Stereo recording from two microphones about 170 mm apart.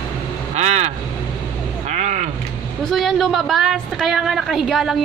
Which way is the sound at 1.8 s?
45° right (ahead or behind).